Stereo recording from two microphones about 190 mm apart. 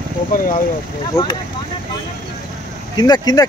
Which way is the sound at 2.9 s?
20° left (ahead or behind).